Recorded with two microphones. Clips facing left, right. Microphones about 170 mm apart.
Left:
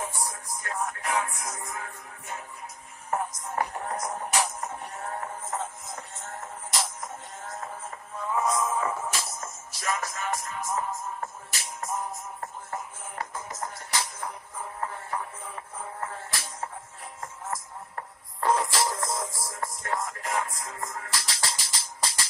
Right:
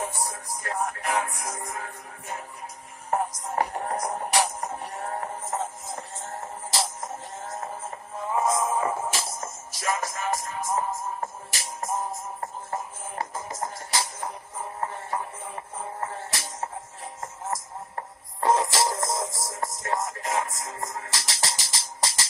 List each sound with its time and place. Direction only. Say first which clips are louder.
0.0 s music: right 2 dB; 30° right (ahead or behind)
3.1 s music: right 3 dB; 30° right (ahead or behind)
17.9 s music: right 3 dB; 25° right (ahead or behind)